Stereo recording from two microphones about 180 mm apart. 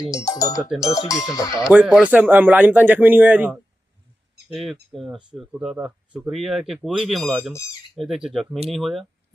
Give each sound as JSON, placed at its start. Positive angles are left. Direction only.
{"t": 0.1, "sound": "speech", "side_deg": 20}
{"t": 1.7, "sound": "speech", "side_deg": -5}